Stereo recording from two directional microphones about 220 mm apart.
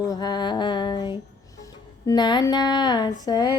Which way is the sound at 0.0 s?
15° left (ahead or behind).